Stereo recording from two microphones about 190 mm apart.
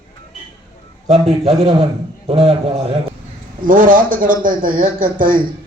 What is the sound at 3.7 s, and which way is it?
A man's voice, 45° right (ahead or behind).